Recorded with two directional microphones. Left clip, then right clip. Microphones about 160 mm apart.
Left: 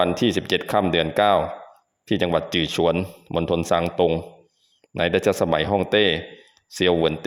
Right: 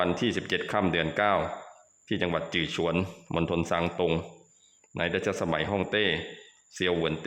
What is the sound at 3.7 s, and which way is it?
Speech, 30° left (ahead or behind).